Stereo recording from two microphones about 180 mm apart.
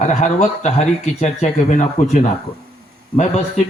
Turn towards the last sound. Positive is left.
turn(degrees=40)  # may be behind; listen again after turning